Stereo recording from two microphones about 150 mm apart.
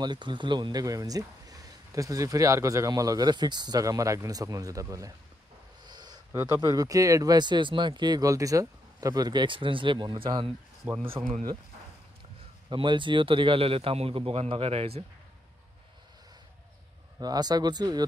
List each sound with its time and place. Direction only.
0.0 s speech: 30° right (ahead or behind)
10.8 s speech: 10° right (ahead or behind)
11.2 s speech: 50° right (ahead or behind)
12.6 s a man's voice: 30° right (ahead or behind)
17.2 s speech: 25° right (ahead or behind)